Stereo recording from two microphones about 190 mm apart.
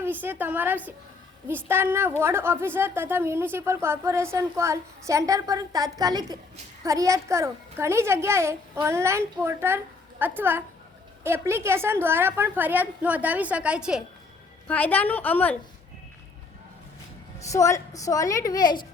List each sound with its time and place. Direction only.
0.0 s a woman's voice: 10° right (ahead or behind)
14.7 s a woman's voice: 10° left (ahead or behind)
17.5 s a woman's voice: 15° left (ahead or behind)